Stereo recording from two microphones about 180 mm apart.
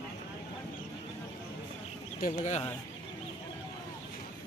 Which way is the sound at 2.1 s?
45° left (ahead or behind).